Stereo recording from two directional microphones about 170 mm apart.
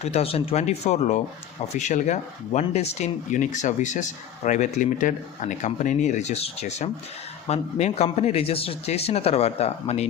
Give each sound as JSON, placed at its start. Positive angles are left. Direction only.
{"t": 0.0, "sound": "speech", "side_deg": 40}